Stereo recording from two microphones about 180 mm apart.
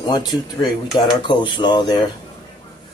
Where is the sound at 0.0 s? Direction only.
20° left (ahead or behind).